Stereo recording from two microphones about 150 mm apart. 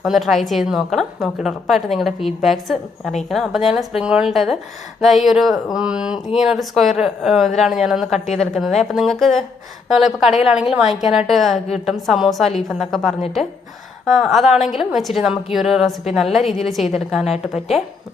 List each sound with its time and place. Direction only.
0.0 s a woman's voice: centre (ahead or behind)